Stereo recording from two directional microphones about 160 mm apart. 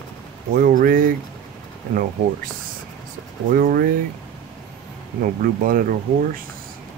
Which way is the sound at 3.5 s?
65° right (ahead or behind).